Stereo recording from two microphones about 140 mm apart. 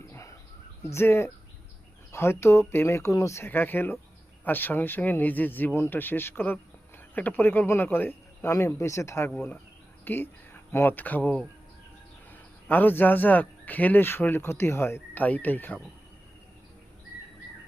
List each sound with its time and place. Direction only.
0.1 s a sound: 20° left (ahead or behind)
0.9 s a man's voice: 15° left (ahead or behind)
12.6 s a man's voice: 15° left (ahead or behind)